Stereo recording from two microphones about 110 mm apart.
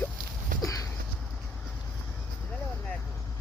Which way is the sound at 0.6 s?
30° left (ahead or behind).